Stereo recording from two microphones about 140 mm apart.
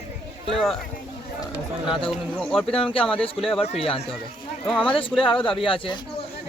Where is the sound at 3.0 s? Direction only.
5° left (ahead or behind).